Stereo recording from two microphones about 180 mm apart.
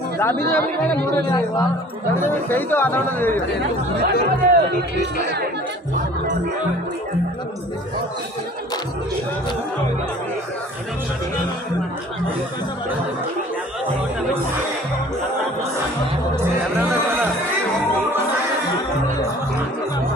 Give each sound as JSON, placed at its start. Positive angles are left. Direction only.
{"t": 0.5, "sound": "speech", "side_deg": 10}
{"t": 4.0, "sound": "speech", "side_deg": -60}